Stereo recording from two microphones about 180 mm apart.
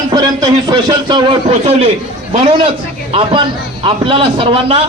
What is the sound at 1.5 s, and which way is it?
Speech, 35° right (ahead or behind).